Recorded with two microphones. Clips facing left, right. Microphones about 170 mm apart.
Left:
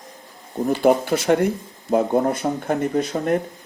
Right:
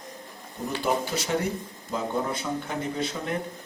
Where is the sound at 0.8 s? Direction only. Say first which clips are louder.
Left 9 dB; 55° left (ahead or behind).